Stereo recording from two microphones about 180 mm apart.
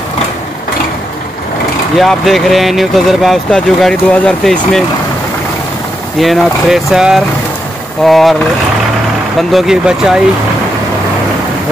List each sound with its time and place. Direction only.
2.0 s speech: centre (ahead or behind)
6.1 s speech: centre (ahead or behind)
9.4 s speech: centre (ahead or behind)